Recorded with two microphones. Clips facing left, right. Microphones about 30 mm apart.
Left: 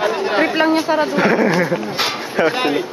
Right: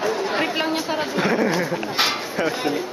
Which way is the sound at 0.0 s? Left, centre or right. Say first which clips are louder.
Left 5 dB; left.